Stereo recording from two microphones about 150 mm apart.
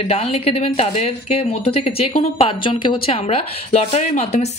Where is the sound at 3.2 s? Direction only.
45° left (ahead or behind).